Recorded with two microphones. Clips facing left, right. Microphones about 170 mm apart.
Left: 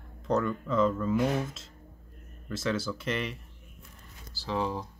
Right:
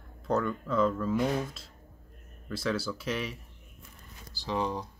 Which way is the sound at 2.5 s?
Centre (ahead or behind).